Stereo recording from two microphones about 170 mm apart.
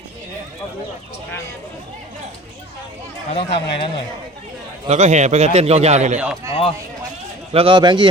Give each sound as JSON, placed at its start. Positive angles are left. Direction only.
{"t": 3.3, "sound": "speech", "side_deg": 35}
{"t": 4.9, "sound": "a man's voice", "side_deg": -40}
{"t": 6.5, "sound": "speech", "side_deg": 35}
{"t": 7.5, "sound": "a man's voice", "side_deg": -30}